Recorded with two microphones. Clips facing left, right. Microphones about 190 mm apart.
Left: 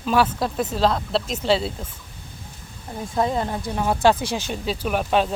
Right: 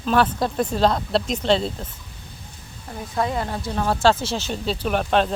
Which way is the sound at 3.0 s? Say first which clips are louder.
Left 2 dB; 25° left (ahead or behind).